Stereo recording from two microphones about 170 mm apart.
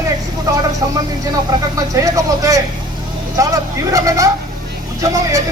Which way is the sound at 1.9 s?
20° right (ahead or behind).